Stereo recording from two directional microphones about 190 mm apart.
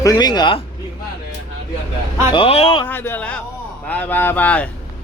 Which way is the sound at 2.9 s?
10° left (ahead or behind).